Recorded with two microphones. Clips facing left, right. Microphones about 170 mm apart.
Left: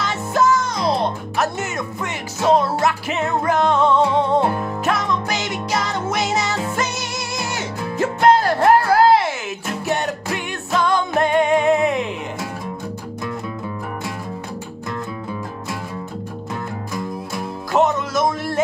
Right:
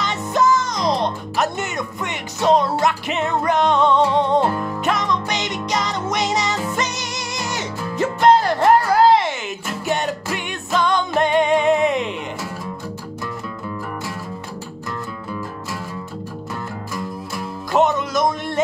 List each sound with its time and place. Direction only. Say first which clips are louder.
0.0 s speech: even; 5° left (ahead or behind)
4.5 s music: even; 20° left (ahead or behind)
4.8 s music: even; 5° left (ahead or behind)
10.3 s music: left 1 dB; centre (ahead or behind)
17.7 s a sound: even; centre (ahead or behind)